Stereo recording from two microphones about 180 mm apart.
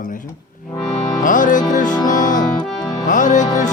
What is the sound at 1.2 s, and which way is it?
Music, 45° left (ahead or behind).